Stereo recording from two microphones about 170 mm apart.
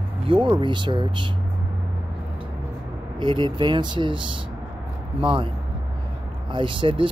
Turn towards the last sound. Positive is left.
turn(degrees=-30)  # may be behind; listen again after turning